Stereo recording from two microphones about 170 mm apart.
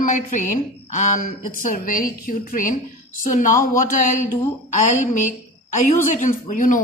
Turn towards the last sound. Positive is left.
turn(degrees=50)  # may be behind; listen again after turning